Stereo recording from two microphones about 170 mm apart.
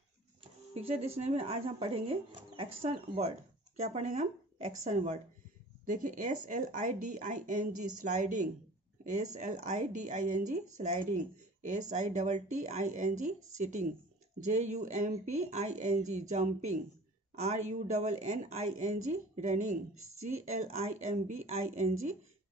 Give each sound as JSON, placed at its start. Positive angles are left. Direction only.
{"t": 0.4, "sound": "speech", "side_deg": -35}